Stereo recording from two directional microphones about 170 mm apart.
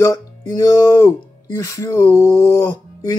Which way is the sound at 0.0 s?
20° left (ahead or behind).